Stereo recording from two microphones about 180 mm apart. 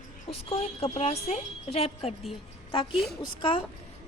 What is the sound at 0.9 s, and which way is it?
A woman's voice, 35° left (ahead or behind).